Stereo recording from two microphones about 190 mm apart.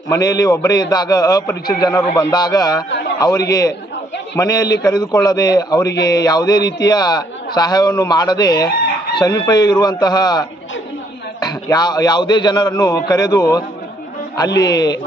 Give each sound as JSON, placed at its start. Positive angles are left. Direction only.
{"t": 0.1, "sound": "a man's voice", "side_deg": 15}